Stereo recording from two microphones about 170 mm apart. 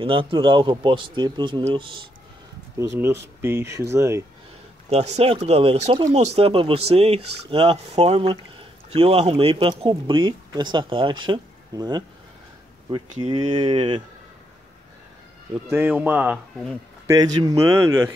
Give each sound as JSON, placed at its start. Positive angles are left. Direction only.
{"t": 0.0, "sound": "speech", "side_deg": -30}
{"t": 2.8, "sound": "speech", "side_deg": -15}
{"t": 4.8, "sound": "speech", "side_deg": -40}
{"t": 13.2, "sound": "speech", "side_deg": -25}
{"t": 15.7, "sound": "speech", "side_deg": -10}
{"t": 17.1, "sound": "speech", "side_deg": -25}